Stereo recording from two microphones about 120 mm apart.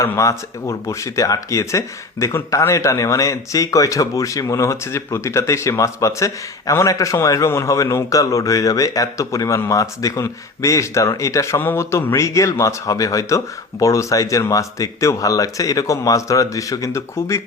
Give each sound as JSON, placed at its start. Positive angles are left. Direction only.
{"t": 0.0, "sound": "speech", "side_deg": 25}